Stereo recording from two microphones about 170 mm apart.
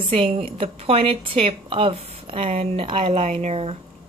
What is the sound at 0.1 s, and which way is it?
A woman's voice, 35° right (ahead or behind).